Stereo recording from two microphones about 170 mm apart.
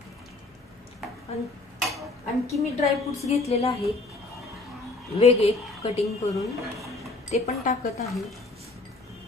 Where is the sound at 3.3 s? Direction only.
35° left (ahead or behind).